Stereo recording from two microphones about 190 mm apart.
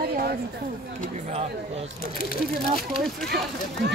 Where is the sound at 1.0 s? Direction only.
35° right (ahead or behind).